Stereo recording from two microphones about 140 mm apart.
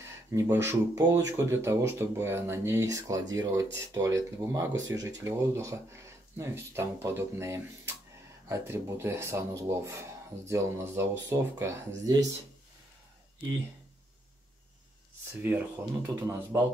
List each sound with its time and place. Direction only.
0.3 s speech: 20° right (ahead or behind)
15.5 s speech: 15° right (ahead or behind)